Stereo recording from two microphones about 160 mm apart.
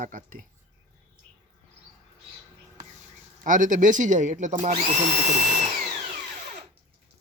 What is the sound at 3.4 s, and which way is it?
Speech, 55° right (ahead or behind).